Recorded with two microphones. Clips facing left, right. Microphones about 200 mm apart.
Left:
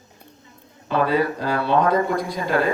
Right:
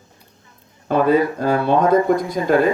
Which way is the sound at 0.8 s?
50° right (ahead or behind).